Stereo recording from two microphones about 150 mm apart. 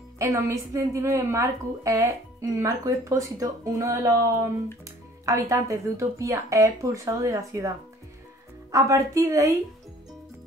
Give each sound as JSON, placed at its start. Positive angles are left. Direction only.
{"t": 0.2, "sound": "a woman's voice", "side_deg": -20}
{"t": 8.7, "sound": "a woman's voice", "side_deg": -20}